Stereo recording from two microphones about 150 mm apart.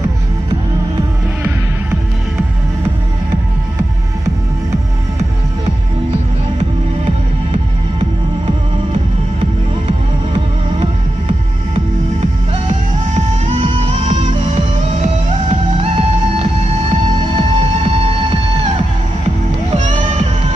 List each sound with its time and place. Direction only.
13.1 s music: 40° right (ahead or behind)
15.8 s music: 40° right (ahead or behind)
19.8 s music: 55° right (ahead or behind)